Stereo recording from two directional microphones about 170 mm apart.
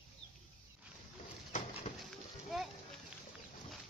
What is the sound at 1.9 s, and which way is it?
Horse, 40° left (ahead or behind).